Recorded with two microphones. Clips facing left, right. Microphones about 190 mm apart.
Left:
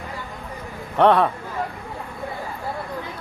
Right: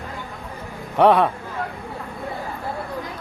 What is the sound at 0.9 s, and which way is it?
Speech, centre (ahead or behind).